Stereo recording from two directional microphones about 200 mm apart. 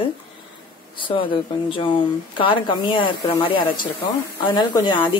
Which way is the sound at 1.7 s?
25° left (ahead or behind).